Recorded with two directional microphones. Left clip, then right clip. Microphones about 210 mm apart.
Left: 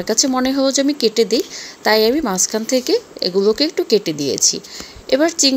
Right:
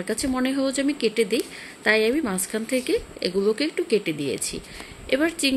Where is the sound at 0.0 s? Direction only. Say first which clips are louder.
Left 8 dB; 15° left (ahead or behind).